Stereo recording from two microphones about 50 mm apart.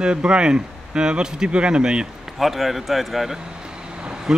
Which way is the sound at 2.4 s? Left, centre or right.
Centre.